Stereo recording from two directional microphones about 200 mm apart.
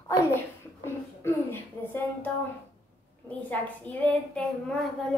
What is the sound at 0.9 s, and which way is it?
A woman's voice, 10° left (ahead or behind).